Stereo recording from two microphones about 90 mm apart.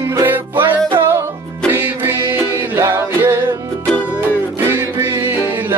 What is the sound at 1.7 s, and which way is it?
Music, 25° right (ahead or behind).